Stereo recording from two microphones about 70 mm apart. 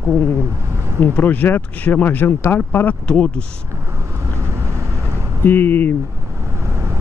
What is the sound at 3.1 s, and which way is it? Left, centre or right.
Speech, centre.